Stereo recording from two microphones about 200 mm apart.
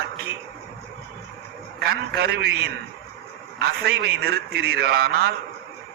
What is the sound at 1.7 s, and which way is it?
A man's voice, 55° right (ahead or behind).